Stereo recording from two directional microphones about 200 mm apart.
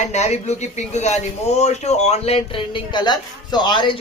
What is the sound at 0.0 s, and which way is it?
A man's voice, 35° left (ahead or behind).